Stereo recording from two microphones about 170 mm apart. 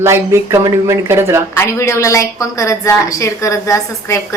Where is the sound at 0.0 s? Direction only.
15° right (ahead or behind).